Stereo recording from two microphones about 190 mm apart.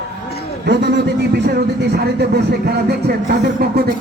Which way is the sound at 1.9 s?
55° right (ahead or behind).